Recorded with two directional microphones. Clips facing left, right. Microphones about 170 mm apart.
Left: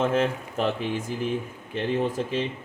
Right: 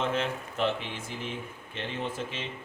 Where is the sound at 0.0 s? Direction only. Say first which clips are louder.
Left 6 dB; 45° left (ahead or behind).